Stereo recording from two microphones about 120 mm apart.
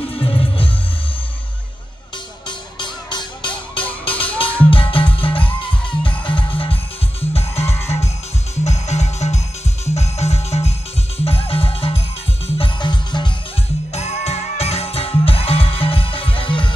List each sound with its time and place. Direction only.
0.0 s music: 50° left (ahead or behind)
2.4 s music: 40° left (ahead or behind)
13.9 s music: 60° left (ahead or behind); by 16.7 s 45° left (ahead or behind)